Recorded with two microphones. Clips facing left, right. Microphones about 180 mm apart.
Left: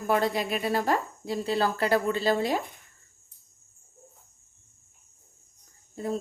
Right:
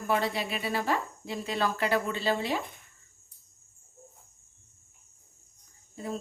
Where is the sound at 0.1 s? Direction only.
45° left (ahead or behind).